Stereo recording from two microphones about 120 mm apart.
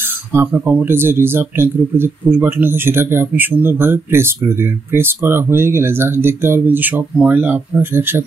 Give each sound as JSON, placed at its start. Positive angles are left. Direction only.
{"t": 0.5, "sound": "speech", "side_deg": -15}